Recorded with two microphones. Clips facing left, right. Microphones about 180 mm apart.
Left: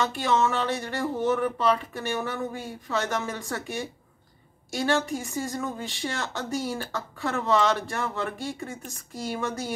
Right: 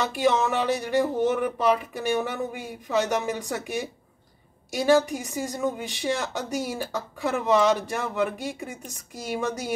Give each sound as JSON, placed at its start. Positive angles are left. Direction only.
{"t": 0.1, "sound": "speech", "side_deg": -15}